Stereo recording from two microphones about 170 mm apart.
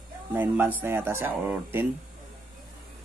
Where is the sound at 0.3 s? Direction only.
10° right (ahead or behind).